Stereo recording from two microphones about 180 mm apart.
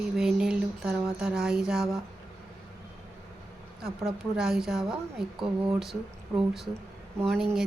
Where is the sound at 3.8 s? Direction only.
5° right (ahead or behind).